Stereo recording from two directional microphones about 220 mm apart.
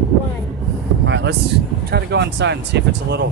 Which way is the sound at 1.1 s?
55° right (ahead or behind).